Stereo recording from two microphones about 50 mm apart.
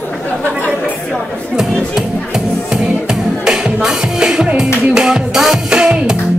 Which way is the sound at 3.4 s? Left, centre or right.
Centre.